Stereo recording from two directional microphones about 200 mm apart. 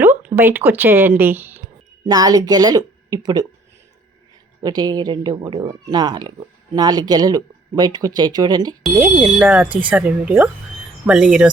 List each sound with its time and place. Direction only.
0.0 s speech: 10° right (ahead or behind)
4.6 s speech: 20° right (ahead or behind)
9.0 s speech: 5° right (ahead or behind)